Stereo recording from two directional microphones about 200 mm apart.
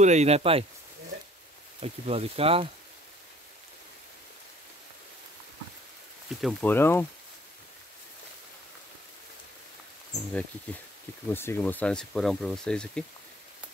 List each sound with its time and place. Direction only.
0.0 s speech: 35° right (ahead or behind)
1.8 s speech: 30° right (ahead or behind)
6.4 s speech: 10° left (ahead or behind)
11.2 s speech: 10° left (ahead or behind)